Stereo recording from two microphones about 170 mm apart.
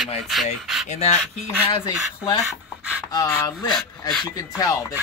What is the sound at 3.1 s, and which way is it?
Speech, 20° left (ahead or behind).